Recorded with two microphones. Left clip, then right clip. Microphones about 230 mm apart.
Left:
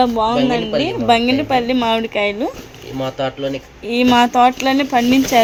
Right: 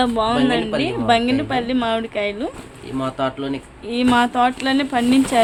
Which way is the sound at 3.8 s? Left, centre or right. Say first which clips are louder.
Left 4 dB; centre.